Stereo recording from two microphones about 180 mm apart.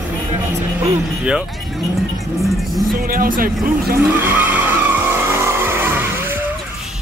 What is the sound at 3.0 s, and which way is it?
Speech, 55° right (ahead or behind).